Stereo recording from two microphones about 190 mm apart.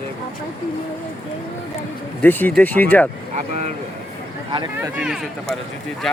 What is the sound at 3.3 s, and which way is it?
Speech, 40° right (ahead or behind).